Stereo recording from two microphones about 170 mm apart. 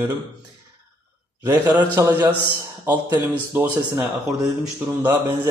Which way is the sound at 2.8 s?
10° right (ahead or behind).